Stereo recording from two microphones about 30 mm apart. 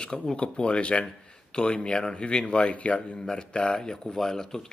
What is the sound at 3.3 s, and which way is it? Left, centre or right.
Speech, left.